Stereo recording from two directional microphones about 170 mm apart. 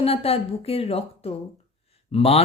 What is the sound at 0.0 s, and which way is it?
Speech, 35° left (ahead or behind).